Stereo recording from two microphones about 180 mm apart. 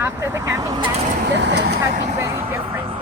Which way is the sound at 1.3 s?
70° right (ahead or behind).